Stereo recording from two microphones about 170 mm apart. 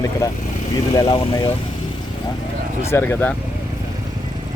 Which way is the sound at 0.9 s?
20° left (ahead or behind).